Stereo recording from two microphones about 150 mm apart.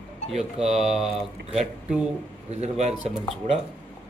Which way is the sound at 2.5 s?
45° right (ahead or behind).